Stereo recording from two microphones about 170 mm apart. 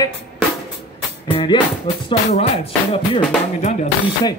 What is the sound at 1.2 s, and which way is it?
Music, 30° left (ahead or behind).